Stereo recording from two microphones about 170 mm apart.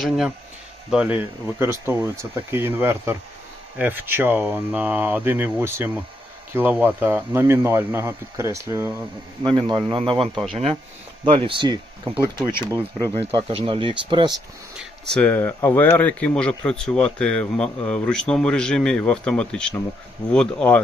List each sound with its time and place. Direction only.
0.0 s speech: centre (ahead or behind); by 13.4 s 20° right (ahead or behind)
13.5 s speech: 35° right (ahead or behind)
14.8 s speech: 5° left (ahead or behind)